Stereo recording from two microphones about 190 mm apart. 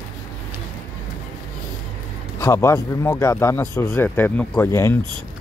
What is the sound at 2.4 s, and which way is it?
Speech, 15° left (ahead or behind).